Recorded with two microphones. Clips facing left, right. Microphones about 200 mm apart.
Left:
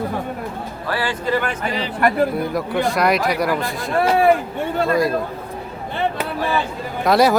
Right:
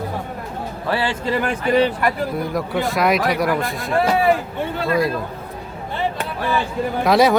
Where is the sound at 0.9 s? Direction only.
25° right (ahead or behind).